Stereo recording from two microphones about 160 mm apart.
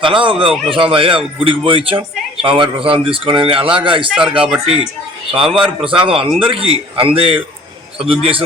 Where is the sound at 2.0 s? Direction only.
5° right (ahead or behind).